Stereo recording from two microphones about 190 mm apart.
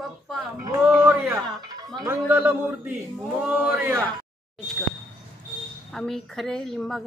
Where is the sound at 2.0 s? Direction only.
10° right (ahead or behind).